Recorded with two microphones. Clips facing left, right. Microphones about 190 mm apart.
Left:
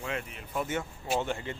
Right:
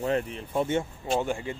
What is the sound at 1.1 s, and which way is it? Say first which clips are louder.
Speech: right 3 dB; 15° right (ahead or behind).